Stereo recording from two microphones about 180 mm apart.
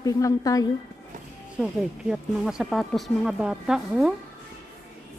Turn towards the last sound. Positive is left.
turn(degrees=-5)  # may be behind; listen again after turning